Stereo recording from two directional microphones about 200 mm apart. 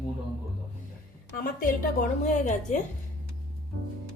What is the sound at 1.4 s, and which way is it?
A woman's voice, 45° left (ahead or behind).